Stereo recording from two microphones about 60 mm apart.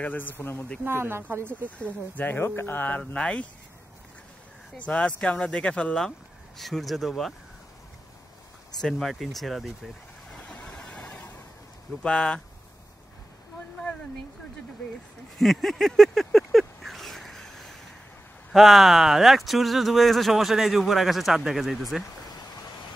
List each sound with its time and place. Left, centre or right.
0.0 s speech: left
0.8 s speech: right
1.6 s speech: left
3.0 s speech: centre
4.7 s speech: left
6.6 s speech: centre
8.9 s speech: centre
10.4 s vehicle: left
12.0 s speech: centre
15.3 s a sound: centre
18.5 s speech: centre